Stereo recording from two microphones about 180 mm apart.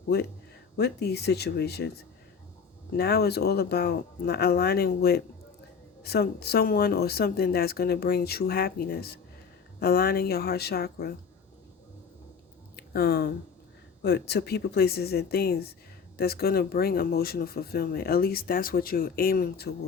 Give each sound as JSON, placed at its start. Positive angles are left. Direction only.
{"t": 0.8, "sound": "speech", "side_deg": 65}
{"t": 2.9, "sound": "speech", "side_deg": 60}
{"t": 12.7, "sound": "a sound", "side_deg": 60}
{"t": 14.0, "sound": "speech", "side_deg": 65}